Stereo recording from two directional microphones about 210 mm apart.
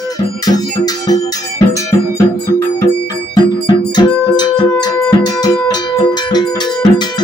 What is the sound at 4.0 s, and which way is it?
Music, 20° left (ahead or behind).